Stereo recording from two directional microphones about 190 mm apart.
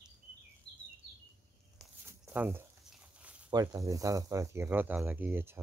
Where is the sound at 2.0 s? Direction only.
10° right (ahead or behind).